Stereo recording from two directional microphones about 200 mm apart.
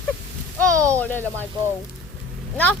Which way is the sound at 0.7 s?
15° right (ahead or behind).